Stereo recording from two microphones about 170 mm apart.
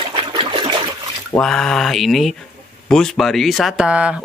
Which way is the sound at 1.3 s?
5° left (ahead or behind).